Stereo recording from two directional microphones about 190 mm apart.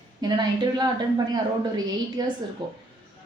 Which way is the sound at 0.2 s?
20° right (ahead or behind).